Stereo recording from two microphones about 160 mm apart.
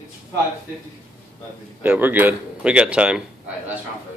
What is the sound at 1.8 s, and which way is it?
Speech, 10° right (ahead or behind).